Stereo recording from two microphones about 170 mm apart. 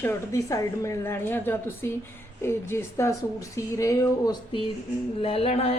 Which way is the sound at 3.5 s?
20° left (ahead or behind).